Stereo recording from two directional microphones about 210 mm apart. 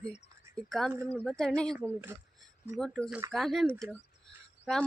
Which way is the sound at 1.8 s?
10° right (ahead or behind).